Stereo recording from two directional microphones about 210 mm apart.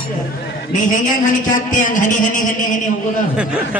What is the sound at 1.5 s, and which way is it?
A man's voice, 40° left (ahead or behind).